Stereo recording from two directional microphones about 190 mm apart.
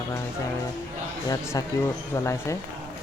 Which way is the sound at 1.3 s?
20° left (ahead or behind).